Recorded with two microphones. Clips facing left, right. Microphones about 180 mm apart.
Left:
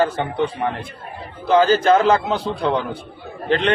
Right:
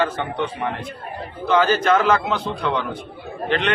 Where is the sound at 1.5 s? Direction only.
30° left (ahead or behind).